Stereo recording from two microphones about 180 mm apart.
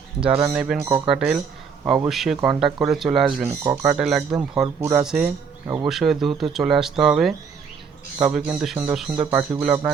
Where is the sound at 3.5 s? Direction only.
15° right (ahead or behind).